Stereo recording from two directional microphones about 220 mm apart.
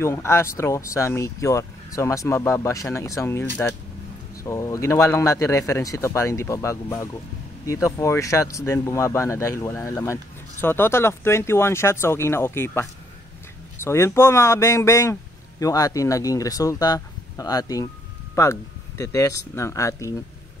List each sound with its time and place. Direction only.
0.0 s speech: 10° left (ahead or behind)